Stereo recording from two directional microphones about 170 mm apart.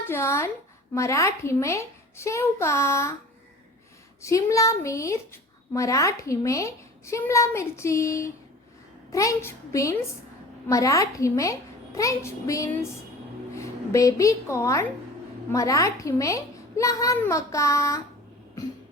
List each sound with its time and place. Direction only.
0.1 s a woman's voice: 15° left (ahead or behind)
4.2 s a woman's voice: 20° left (ahead or behind)